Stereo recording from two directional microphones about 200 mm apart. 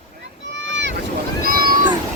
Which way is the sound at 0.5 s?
65° right (ahead or behind).